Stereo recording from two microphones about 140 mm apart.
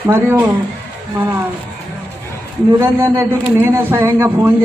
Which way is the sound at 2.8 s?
20° right (ahead or behind).